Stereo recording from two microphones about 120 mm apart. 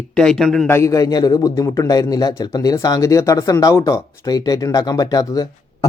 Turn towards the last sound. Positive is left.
turn(degrees=30)  # may be behind; listen again after turning